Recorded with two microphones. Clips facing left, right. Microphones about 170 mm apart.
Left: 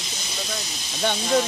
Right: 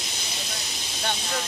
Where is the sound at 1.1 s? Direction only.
55° left (ahead or behind).